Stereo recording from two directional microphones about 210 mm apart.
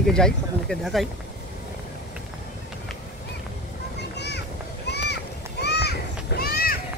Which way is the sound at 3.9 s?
55° left (ahead or behind).